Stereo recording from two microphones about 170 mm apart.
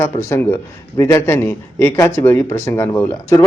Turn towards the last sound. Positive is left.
turn(degrees=20)  # may be behind; listen again after turning